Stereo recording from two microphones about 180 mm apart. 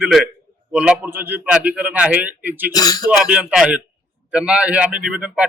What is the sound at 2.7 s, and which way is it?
Speech, 20° left (ahead or behind).